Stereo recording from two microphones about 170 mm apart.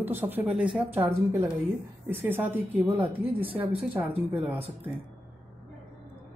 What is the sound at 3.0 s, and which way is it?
Speech, 30° right (ahead or behind).